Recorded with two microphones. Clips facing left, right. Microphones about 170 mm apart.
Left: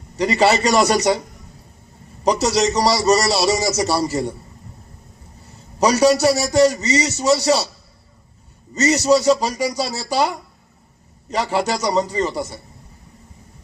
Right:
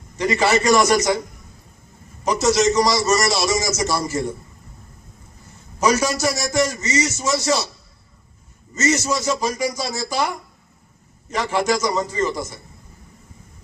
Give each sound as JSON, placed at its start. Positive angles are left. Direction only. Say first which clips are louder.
{"t": 0.2, "sound": "a man's voice", "louder": "left 2 dB", "side_deg": 35}
{"t": 2.2, "sound": "a man's voice", "louder": "even", "side_deg": 35}
{"t": 5.8, "sound": "a man's voice", "louder": "left 5 dB", "side_deg": 35}
{"t": 8.7, "sound": "a man's voice", "louder": "left 5 dB", "side_deg": 35}